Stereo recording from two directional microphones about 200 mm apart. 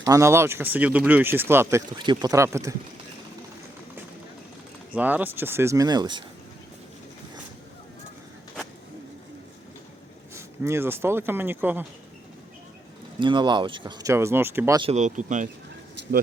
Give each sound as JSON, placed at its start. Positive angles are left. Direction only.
{"t": 0.1, "sound": "speech", "side_deg": -15}
{"t": 4.9, "sound": "speech", "side_deg": -10}
{"t": 10.3, "sound": "speech", "side_deg": -15}
{"t": 13.1, "sound": "speech", "side_deg": -25}
{"t": 14.8, "sound": "speech", "side_deg": -35}